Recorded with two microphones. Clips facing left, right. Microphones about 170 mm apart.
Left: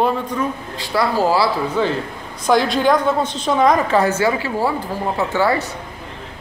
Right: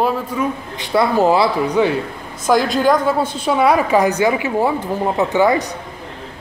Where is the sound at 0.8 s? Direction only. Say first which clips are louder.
Right 3 dB; 20° right (ahead or behind).